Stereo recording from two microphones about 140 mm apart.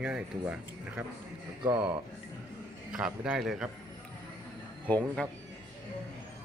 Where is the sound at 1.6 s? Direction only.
35° right (ahead or behind).